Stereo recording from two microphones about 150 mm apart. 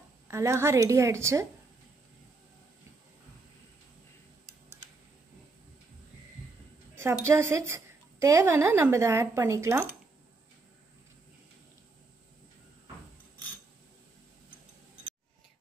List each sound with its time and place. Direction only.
0.3 s a woman's voice: 20° right (ahead or behind)
7.0 s a woman's voice: 15° right (ahead or behind)